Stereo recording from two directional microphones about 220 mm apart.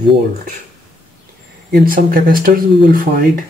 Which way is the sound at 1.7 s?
40° right (ahead or behind).